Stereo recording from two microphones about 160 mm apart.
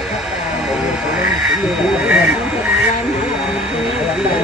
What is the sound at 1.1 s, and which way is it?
Vehicle, 5° right (ahead or behind).